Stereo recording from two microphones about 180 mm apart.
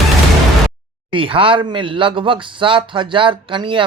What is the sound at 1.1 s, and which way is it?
Speech, 30° right (ahead or behind).